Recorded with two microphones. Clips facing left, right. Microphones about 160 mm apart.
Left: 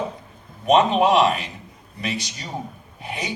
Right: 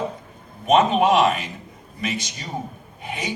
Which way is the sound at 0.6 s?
35° left (ahead or behind).